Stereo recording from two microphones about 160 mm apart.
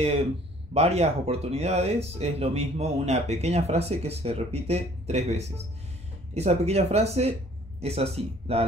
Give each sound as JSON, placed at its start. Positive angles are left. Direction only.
{"t": 0.7, "sound": "speech", "side_deg": -40}